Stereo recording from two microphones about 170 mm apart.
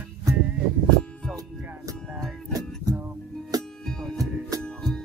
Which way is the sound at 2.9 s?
20° right (ahead or behind).